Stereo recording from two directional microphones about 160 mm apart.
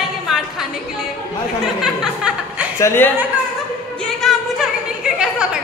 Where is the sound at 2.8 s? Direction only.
15° left (ahead or behind).